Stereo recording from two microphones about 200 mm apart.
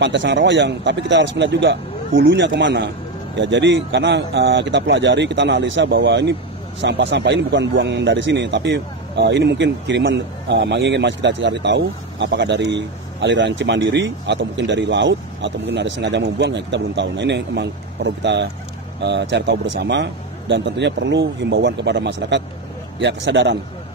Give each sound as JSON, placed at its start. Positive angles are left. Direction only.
{"t": 0.0, "sound": "speech", "side_deg": -65}